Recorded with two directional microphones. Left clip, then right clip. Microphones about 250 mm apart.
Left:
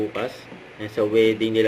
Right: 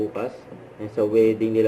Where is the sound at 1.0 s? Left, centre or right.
Centre.